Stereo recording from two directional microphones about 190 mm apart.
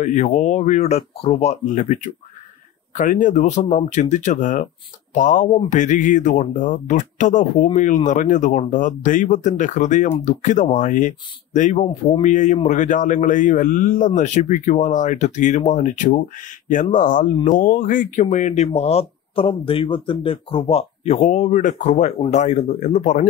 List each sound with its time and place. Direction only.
0.0 s speech: 35° left (ahead or behind)